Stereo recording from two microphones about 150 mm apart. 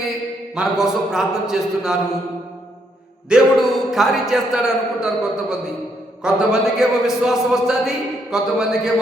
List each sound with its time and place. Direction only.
0.5 s a man's voice: 5° right (ahead or behind)
3.2 s a man's voice: 5° right (ahead or behind)